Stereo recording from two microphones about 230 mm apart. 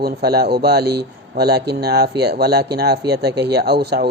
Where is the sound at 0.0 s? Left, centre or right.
Right.